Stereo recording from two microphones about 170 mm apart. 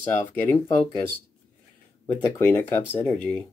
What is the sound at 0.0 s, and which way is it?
Speech, 15° left (ahead or behind).